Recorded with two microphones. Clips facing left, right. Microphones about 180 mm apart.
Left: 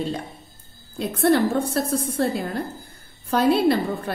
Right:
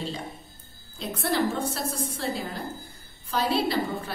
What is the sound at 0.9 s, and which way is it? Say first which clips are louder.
A woman's voice: left 8 dB; 60° left (ahead or behind).